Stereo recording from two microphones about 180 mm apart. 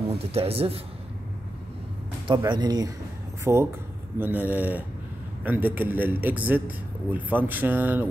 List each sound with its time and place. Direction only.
0.1 s speech: 35° right (ahead or behind)
2.2 s a man's voice: 25° right (ahead or behind)